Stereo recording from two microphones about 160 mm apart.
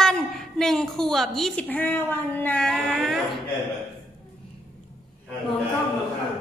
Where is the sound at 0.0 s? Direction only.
5° left (ahead or behind).